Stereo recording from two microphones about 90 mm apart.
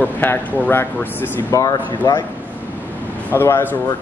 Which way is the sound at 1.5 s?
45° left (ahead or behind).